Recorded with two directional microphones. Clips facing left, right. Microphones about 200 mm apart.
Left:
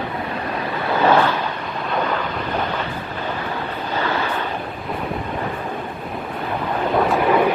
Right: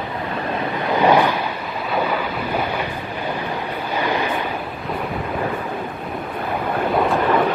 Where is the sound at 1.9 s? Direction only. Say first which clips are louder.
Right 1 dB; 10° right (ahead or behind).